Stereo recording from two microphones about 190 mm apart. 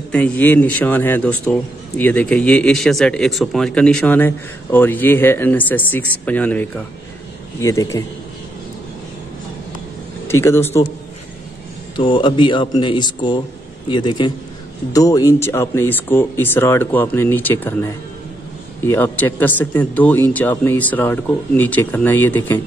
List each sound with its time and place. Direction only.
0.1 s speech: 10° left (ahead or behind)
10.2 s speech: 15° left (ahead or behind)
12.0 s speech: 25° left (ahead or behind); by 22.6 s 10° left (ahead or behind)